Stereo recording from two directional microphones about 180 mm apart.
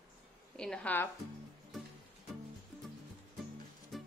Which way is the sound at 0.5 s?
5° left (ahead or behind).